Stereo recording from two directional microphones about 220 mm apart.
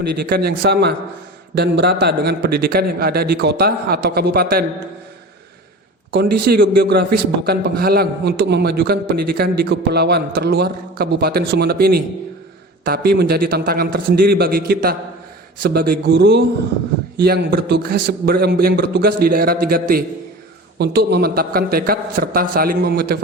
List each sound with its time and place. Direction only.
0.0 s a man's voice: 45° right (ahead or behind)
6.1 s a man's voice: 45° right (ahead or behind)